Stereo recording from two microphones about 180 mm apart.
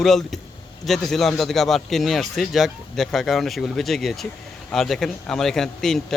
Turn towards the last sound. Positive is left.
turn(degrees=0)  # may be behind; listen again after turning